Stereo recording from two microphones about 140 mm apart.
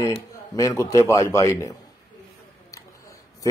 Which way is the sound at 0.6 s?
20° left (ahead or behind).